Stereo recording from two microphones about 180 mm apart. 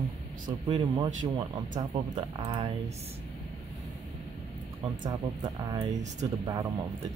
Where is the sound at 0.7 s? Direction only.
25° right (ahead or behind).